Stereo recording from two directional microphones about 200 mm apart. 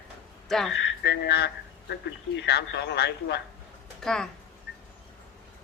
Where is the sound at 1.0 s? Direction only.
55° left (ahead or behind).